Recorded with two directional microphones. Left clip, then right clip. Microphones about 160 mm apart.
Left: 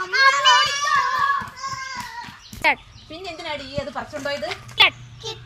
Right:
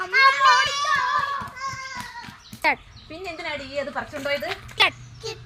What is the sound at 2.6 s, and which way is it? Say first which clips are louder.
Speech: left 3 dB; centre (ahead or behind).